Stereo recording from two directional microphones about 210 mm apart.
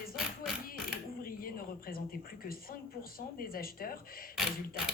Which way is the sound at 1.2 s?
45° left (ahead or behind).